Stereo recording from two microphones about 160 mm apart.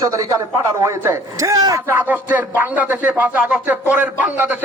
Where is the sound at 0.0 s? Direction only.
20° right (ahead or behind).